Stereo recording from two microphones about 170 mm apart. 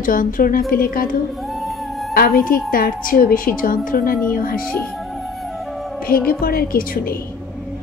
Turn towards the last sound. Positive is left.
turn(degrees=55)  # may be behind; listen again after turning